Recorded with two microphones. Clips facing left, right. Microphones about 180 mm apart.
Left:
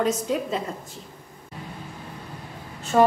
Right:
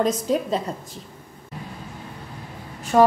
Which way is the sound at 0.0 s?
35° right (ahead or behind).